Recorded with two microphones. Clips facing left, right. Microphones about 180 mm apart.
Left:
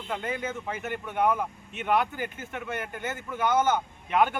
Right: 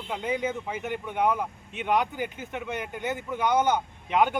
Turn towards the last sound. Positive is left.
turn(degrees=-15)  # may be behind; listen again after turning